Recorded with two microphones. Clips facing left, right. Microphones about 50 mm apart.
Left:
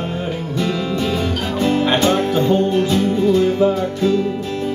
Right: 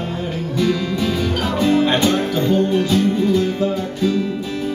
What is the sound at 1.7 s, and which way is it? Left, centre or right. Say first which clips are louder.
Music: left 1 dB; left.